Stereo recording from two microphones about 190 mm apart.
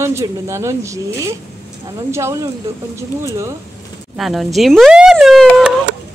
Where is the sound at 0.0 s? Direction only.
15° right (ahead or behind).